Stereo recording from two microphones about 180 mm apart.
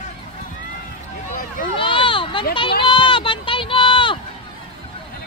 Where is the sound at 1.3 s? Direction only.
50° left (ahead or behind).